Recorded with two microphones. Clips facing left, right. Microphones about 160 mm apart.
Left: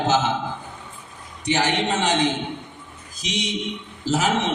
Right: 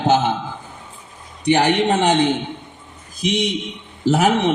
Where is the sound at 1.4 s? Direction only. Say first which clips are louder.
Right 6 dB; 55° right (ahead or behind).